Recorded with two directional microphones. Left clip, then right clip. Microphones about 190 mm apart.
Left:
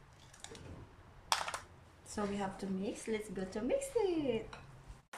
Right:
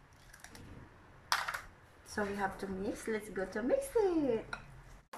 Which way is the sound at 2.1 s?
5° left (ahead or behind).